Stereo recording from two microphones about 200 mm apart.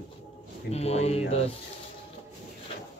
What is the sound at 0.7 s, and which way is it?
Music, 30° left (ahead or behind).